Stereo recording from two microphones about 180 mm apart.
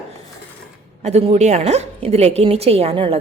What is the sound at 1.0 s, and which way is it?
A woman's voice, 35° right (ahead or behind).